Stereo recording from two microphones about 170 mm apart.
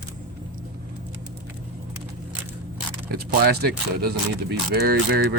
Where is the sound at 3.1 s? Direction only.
70° right (ahead or behind).